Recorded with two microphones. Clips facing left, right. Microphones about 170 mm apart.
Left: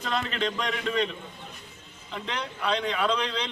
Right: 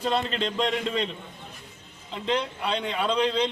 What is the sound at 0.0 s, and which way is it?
A man's voice, 30° right (ahead or behind).